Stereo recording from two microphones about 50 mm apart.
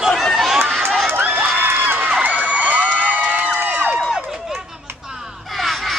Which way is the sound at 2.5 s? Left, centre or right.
Right.